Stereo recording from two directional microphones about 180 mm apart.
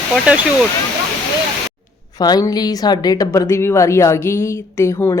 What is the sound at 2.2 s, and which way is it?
A woman's voice, 20° left (ahead or behind).